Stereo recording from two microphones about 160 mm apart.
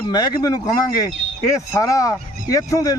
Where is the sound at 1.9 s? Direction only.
20° left (ahead or behind).